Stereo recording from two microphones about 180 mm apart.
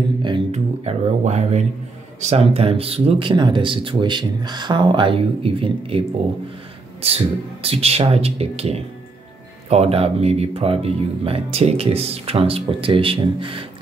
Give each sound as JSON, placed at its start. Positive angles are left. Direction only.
{"t": 0.5, "sound": "music", "side_deg": -35}
{"t": 2.1, "sound": "speech", "side_deg": -35}